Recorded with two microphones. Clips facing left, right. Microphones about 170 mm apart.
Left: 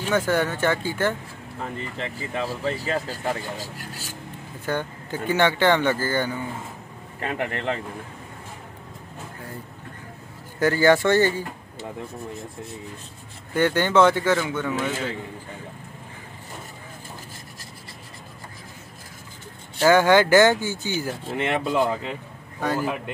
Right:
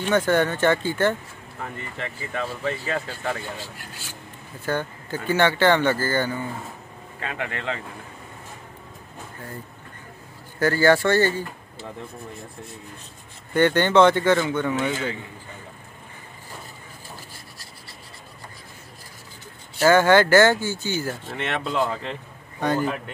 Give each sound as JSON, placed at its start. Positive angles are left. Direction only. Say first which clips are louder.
{"t": 0.0, "sound": "speech", "louder": "right 2 dB", "side_deg": 5}
{"t": 1.6, "sound": "speech", "louder": "left 2 dB", "side_deg": 30}
{"t": 4.6, "sound": "speech", "louder": "right 1 dB", "side_deg": 15}
{"t": 7.2, "sound": "speech", "louder": "left 3 dB", "side_deg": 35}
{"t": 10.6, "sound": "speech", "louder": "even", "side_deg": 15}
{"t": 13.5, "sound": "speech", "louder": "right 2 dB", "side_deg": 5}
{"t": 19.9, "sound": "speech", "louder": "even", "side_deg": 15}